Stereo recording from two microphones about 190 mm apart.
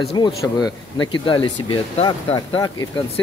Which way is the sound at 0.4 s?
20° left (ahead or behind).